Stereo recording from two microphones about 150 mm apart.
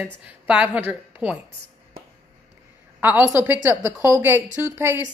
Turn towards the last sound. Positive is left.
turn(degrees=-15)  # may be behind; listen again after turning